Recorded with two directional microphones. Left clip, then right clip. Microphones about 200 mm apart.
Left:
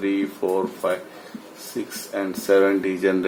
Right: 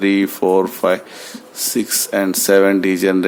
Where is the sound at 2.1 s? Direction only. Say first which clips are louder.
Right 5 dB; 50° right (ahead or behind).